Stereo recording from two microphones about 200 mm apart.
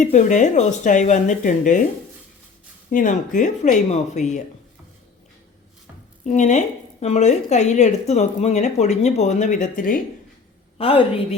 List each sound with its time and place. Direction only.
0.0 s a woman's voice: 35° left (ahead or behind)
2.9 s a woman's voice: 40° left (ahead or behind)
6.2 s a woman's voice: 35° left (ahead or behind)
10.8 s a woman's voice: 30° left (ahead or behind)